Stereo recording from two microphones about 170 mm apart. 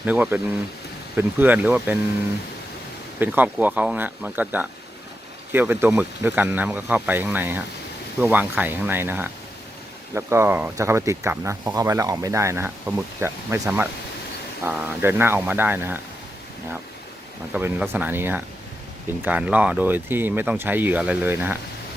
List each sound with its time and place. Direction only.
0.0 s speech: 10° right (ahead or behind)
3.2 s speech: 10° right (ahead or behind)
17.5 s speech: 10° right (ahead or behind)